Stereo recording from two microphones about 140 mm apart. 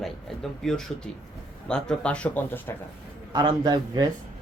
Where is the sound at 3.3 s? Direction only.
30° right (ahead or behind).